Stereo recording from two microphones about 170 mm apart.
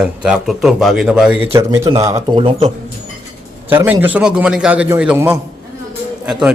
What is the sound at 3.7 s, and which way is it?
A man's voice, 10° right (ahead or behind).